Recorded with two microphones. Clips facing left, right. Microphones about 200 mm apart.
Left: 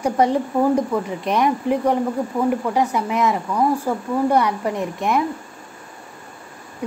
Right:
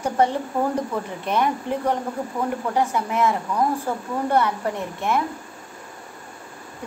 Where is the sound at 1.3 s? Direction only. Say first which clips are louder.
Left 4 dB; 15° left (ahead or behind).